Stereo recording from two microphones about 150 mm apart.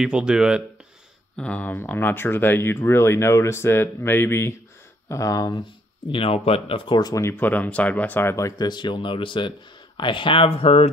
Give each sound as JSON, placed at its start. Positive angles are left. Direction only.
{"t": 0.0, "sound": "speech", "side_deg": -5}
{"t": 1.3, "sound": "speech", "side_deg": 10}
{"t": 6.1, "sound": "speech", "side_deg": 40}